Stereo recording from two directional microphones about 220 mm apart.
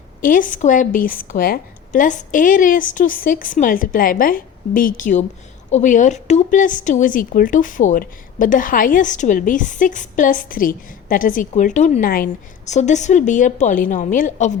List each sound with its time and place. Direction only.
0.2 s speech: 40° left (ahead or behind)